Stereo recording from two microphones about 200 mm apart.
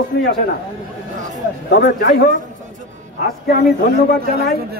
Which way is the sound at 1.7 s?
60° left (ahead or behind).